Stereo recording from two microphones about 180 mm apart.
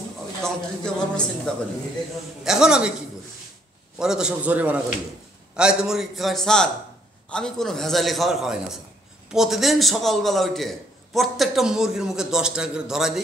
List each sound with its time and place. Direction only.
0.4 s a man's voice: 5° left (ahead or behind)
4.0 s a man's voice: 5° right (ahead or behind)